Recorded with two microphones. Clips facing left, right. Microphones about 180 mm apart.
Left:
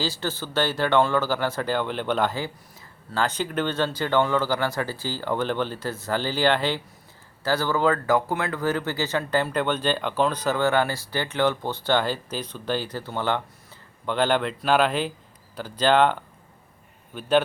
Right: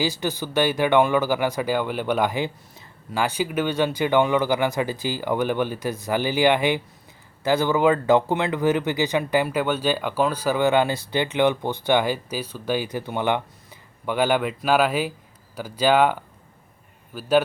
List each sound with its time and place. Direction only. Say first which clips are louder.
0.0 s speech: right 3 dB; 15° right (ahead or behind)
17.2 s speech: right 2 dB; 5° right (ahead or behind)